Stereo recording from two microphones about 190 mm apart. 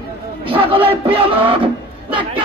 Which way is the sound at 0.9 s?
30° right (ahead or behind).